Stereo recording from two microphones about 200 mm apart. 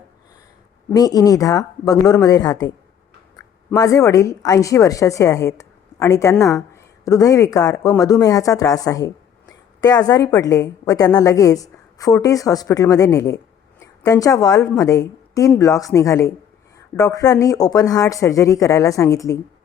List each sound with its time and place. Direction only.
0.9 s speech: 20° left (ahead or behind)